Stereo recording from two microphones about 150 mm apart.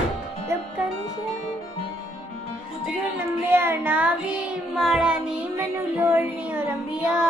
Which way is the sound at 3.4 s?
15° right (ahead or behind).